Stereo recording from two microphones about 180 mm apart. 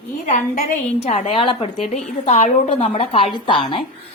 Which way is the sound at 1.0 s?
35° left (ahead or behind).